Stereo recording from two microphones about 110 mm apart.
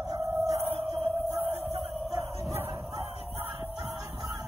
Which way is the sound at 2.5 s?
20° right (ahead or behind).